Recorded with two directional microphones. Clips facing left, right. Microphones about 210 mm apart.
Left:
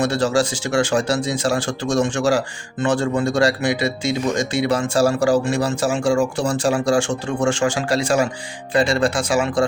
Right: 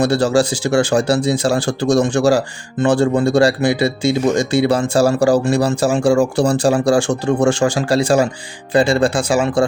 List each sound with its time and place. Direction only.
0.0 s speech: 35° right (ahead or behind)